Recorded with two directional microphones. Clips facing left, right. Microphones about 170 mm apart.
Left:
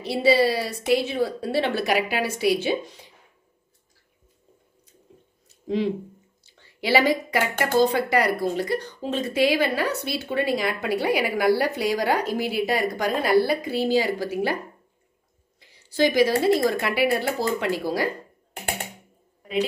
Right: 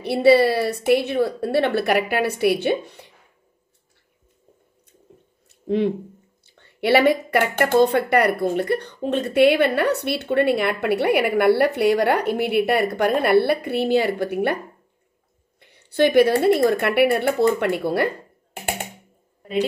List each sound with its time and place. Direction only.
0.0 s a woman's voice: 60° right (ahead or behind)
5.5 s a sound: 60° right (ahead or behind)
6.4 s a woman's voice: 60° right (ahead or behind)
15.6 s a woman's voice: 60° right (ahead or behind)